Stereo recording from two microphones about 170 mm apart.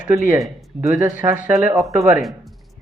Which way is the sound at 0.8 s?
20° right (ahead or behind).